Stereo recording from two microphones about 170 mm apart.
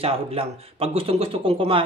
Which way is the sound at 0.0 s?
35° right (ahead or behind).